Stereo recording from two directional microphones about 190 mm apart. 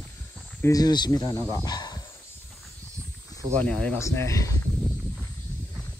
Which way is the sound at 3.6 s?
5° left (ahead or behind).